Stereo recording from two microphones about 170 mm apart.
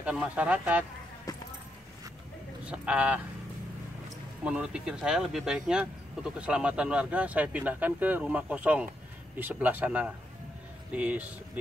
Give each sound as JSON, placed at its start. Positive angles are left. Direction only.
{"t": 0.0, "sound": "speech", "side_deg": -5}
{"t": 1.3, "sound": "a sound", "side_deg": 20}
{"t": 2.6, "sound": "speech", "side_deg": -5}
{"t": 4.5, "sound": "speech", "side_deg": -5}